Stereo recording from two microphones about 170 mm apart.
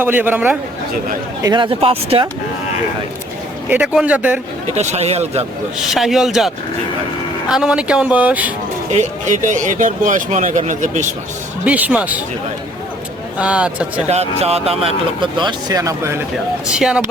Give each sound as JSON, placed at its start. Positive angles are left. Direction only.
{"t": 0.0, "sound": "speech", "side_deg": -10}
{"t": 1.4, "sound": "speech", "side_deg": -25}
{"t": 3.7, "sound": "speech", "side_deg": -5}
{"t": 4.7, "sound": "speech", "side_deg": -40}
{"t": 5.9, "sound": "speech", "side_deg": 0}
{"t": 8.9, "sound": "speech", "side_deg": -45}
{"t": 11.6, "sound": "speech", "side_deg": -10}
{"t": 13.4, "sound": "speech", "side_deg": -5}
{"t": 14.1, "sound": "speech", "side_deg": -40}
{"t": 16.7, "sound": "speech", "side_deg": -5}